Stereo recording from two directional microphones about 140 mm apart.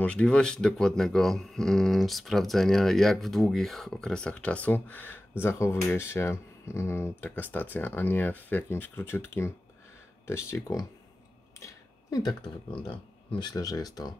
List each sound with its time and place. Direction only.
0.0 s speech: 5° left (ahead or behind)
11.6 s a sound: 30° left (ahead or behind)
13.4 s speech: 25° left (ahead or behind)